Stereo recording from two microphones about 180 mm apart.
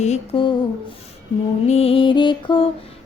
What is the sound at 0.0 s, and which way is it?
Music, 35° left (ahead or behind).